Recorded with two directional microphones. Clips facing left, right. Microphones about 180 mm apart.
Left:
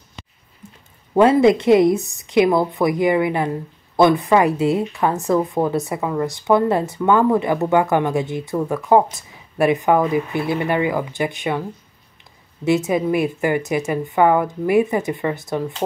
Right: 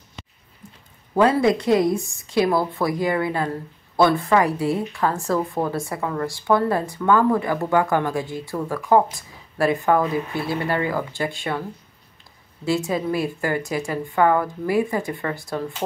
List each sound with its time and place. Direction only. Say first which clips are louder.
1.1 s a woman's voice: left 5 dB; 20° left (ahead or behind)
12.6 s a woman's voice: left 5 dB; 20° left (ahead or behind)